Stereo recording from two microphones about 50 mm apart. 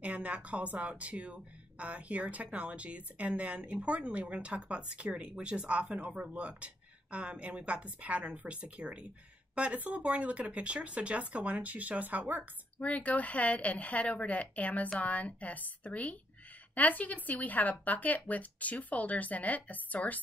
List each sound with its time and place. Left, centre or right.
0.0 s speech: right
12.7 s a woman's voice: left